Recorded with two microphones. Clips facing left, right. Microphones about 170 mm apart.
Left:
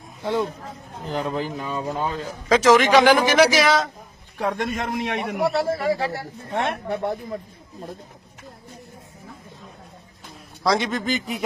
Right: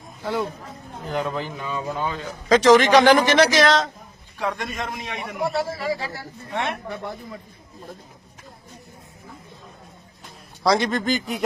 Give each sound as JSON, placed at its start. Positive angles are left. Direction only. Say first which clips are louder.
{"t": 1.1, "sound": "speech", "louder": "left 1 dB", "side_deg": 35}
{"t": 2.5, "sound": "a man's voice", "louder": "right 1 dB", "side_deg": 5}
{"t": 4.4, "sound": "a man's voice", "louder": "left 3 dB", "side_deg": 50}
{"t": 10.2, "sound": "a man's voice", "louder": "right 2 dB", "side_deg": 0}